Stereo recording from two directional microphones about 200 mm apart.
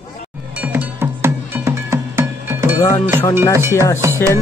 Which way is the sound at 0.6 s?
10° right (ahead or behind).